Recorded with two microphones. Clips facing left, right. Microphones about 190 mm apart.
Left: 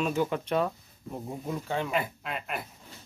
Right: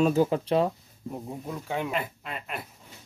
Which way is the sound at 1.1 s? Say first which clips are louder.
Left 2 dB; 5° left (ahead or behind).